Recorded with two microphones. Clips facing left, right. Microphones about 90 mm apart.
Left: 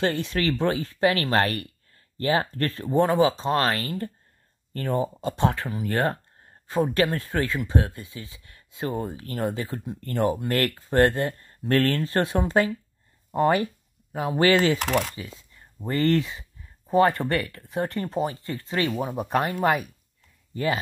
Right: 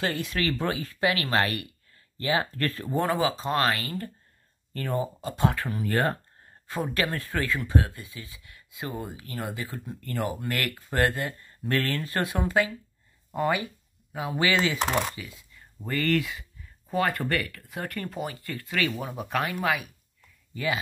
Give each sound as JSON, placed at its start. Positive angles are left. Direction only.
{"t": 0.0, "sound": "speech", "side_deg": 30}
{"t": 13.4, "sound": "speech", "side_deg": 40}
{"t": 14.8, "sound": "speech", "side_deg": -25}
{"t": 15.1, "sound": "speech", "side_deg": 30}